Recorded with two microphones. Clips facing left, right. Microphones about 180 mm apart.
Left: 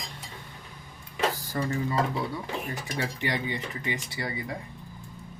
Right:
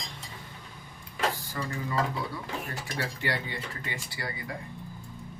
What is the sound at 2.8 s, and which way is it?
Speech, 20° left (ahead or behind).